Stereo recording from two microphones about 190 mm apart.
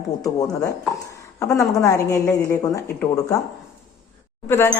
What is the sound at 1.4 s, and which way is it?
Speech, 15° left (ahead or behind).